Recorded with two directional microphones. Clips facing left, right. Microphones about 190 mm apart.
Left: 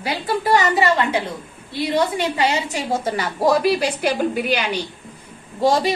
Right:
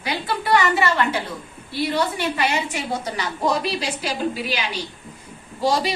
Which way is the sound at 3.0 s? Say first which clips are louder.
Left 4 dB; 55° left (ahead or behind).